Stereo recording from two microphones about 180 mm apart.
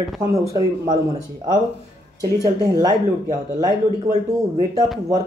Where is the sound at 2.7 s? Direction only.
20° right (ahead or behind).